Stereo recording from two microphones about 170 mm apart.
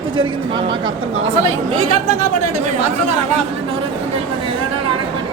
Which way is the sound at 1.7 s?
35° right (ahead or behind).